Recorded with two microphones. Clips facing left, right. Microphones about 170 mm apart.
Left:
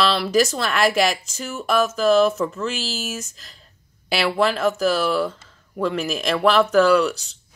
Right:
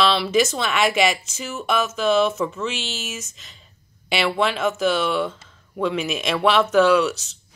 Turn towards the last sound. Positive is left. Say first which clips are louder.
# even
turn(degrees=-5)  # may be behind; listen again after turning